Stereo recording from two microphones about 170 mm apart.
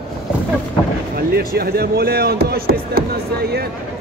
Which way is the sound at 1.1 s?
65° right (ahead or behind).